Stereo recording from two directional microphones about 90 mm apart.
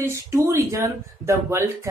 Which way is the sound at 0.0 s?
30° right (ahead or behind).